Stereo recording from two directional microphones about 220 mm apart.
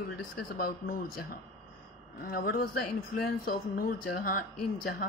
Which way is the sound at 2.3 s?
45° left (ahead or behind).